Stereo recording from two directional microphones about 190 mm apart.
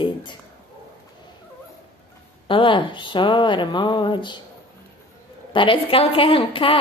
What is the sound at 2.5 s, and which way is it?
Speech, 25° left (ahead or behind).